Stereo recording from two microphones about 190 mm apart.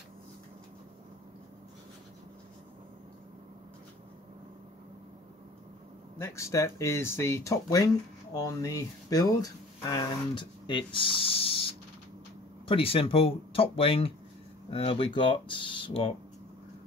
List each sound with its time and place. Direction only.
6.1 s speech: 15° left (ahead or behind)